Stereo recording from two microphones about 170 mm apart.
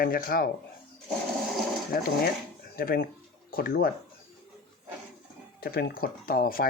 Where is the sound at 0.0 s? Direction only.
60° left (ahead or behind).